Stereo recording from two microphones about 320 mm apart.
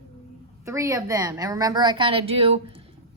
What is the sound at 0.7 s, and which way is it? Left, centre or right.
A woman's voice, centre.